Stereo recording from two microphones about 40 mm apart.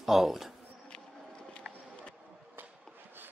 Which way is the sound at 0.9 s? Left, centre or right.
Left.